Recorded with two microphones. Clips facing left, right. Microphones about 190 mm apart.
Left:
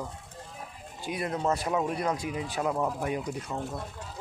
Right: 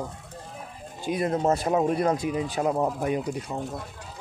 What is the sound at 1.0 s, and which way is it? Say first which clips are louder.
Speech: right 6 dB; 25° right (ahead or behind).